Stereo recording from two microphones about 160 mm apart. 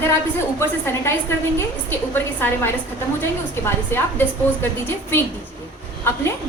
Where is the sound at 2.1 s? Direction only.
15° left (ahead or behind).